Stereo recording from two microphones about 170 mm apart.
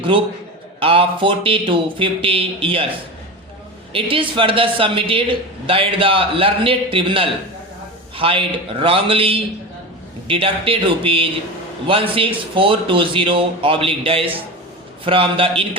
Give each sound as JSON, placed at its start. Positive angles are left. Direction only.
{"t": 0.8, "sound": "speech", "side_deg": -30}
{"t": 3.9, "sound": "speech", "side_deg": -30}